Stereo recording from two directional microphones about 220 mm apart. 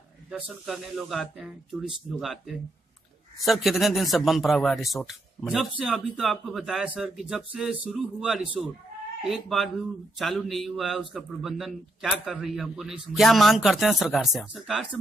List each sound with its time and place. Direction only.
0.3 s a man's voice: centre (ahead or behind)